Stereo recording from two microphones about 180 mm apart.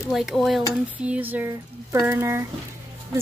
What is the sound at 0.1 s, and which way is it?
A woman's voice, centre (ahead or behind).